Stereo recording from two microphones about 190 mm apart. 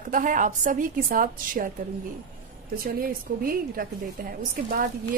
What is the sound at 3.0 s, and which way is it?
A woman's voice, 50° right (ahead or behind).